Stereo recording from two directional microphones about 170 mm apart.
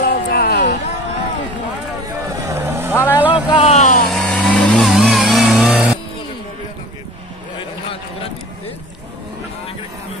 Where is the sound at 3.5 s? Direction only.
40° left (ahead or behind).